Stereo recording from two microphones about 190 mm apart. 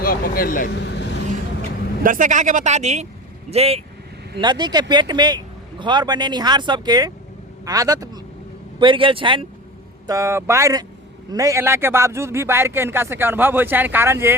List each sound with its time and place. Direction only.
0.0 s speech: 50° left (ahead or behind)
0.8 s vehicle: 65° left (ahead or behind)
2.0 s a man's voice: 45° right (ahead or behind); by 9.5 s 25° right (ahead or behind)
10.1 s speech: 15° right (ahead or behind)